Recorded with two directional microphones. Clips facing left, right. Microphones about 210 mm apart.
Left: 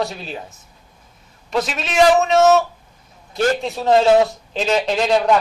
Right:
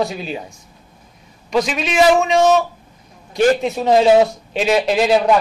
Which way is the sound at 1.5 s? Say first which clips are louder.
Right 4 dB; centre (ahead or behind).